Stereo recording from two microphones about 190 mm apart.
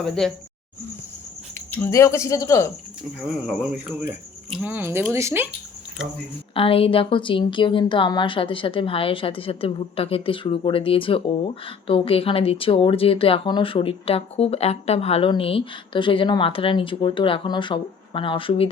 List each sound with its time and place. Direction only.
0.0 s speech: centre (ahead or behind)
1.5 s speech: 10° left (ahead or behind)
3.2 s speech: 5° right (ahead or behind)
6.5 s speech: 30° left (ahead or behind)